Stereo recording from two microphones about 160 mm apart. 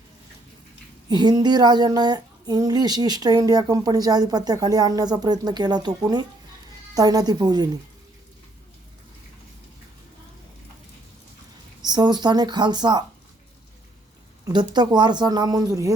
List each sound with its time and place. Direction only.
1.1 s speech: 25° right (ahead or behind)
11.8 s speech: 25° right (ahead or behind)
14.4 s speech: 25° right (ahead or behind)